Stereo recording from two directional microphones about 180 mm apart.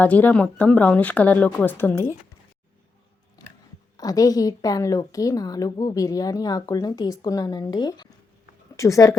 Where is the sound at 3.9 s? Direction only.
20° left (ahead or behind).